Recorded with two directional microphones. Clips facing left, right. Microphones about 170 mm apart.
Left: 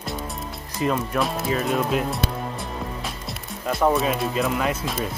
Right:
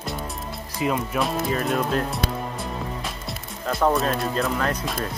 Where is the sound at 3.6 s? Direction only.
5° left (ahead or behind).